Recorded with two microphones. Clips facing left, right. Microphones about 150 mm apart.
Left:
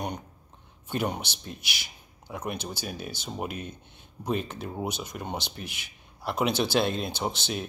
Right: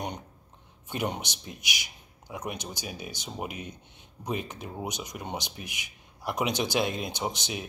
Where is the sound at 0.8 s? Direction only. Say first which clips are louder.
Left 2 dB; 15° right (ahead or behind).